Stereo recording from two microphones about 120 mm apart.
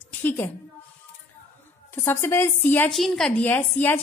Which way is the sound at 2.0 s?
20° left (ahead or behind).